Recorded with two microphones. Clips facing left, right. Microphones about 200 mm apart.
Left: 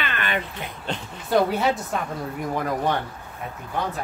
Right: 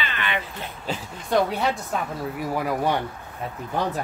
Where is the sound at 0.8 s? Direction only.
Centre (ahead or behind).